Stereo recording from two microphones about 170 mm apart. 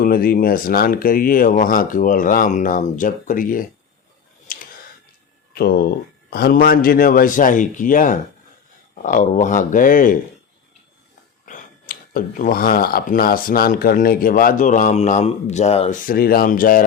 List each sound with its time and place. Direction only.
0.0 s speech: 60° left (ahead or behind)
4.5 s a sound: 55° left (ahead or behind)
5.5 s speech: 65° left (ahead or behind)
11.4 s speech: 55° left (ahead or behind)
16.0 s speech: 60° left (ahead or behind)